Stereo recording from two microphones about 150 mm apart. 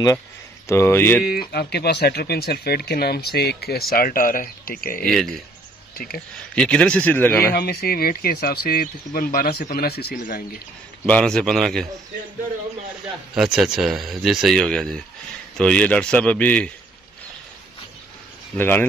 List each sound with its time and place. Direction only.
0.7 s a man's voice: 15° left (ahead or behind)
1.5 s speech: 90° left
3.9 s speech: 75° left (ahead or behind)
5.0 s speech: centre (ahead or behind)
5.9 s speech: 80° left
6.5 s a man's voice: 5° left (ahead or behind)
7.5 s speech: 90° left
11.1 s speech: 5° left (ahead or behind)
13.3 s a man's voice: 5° right (ahead or behind)
18.6 s a man's voice: 15° left (ahead or behind)